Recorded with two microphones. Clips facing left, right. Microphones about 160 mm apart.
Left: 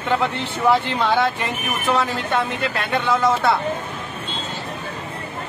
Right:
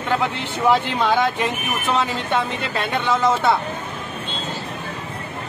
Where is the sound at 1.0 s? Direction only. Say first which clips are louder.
Even; 10° right (ahead or behind).